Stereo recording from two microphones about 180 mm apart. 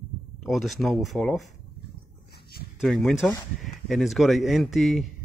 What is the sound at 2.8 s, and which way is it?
A man's voice, centre (ahead or behind).